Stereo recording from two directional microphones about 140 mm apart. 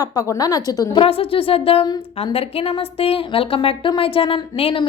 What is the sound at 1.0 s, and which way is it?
A woman's voice, 40° left (ahead or behind).